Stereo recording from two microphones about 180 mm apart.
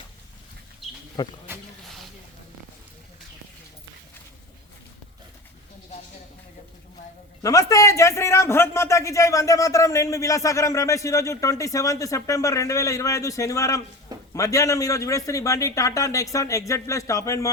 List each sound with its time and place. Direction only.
1.2 s speech: 25° left (ahead or behind)
7.4 s a man's voice: 20° left (ahead or behind)